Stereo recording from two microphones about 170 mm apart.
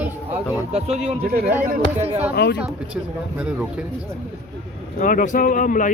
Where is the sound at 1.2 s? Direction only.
60° right (ahead or behind).